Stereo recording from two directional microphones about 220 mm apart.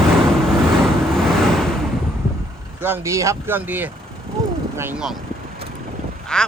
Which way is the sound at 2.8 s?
10° right (ahead or behind).